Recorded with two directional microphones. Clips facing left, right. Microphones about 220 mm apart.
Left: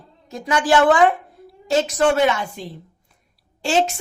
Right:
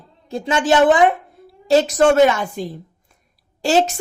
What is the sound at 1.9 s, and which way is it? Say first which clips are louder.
Speech: right 3 dB; 45° right (ahead or behind).